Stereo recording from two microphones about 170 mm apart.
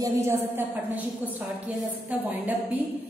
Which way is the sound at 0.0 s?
15° right (ahead or behind).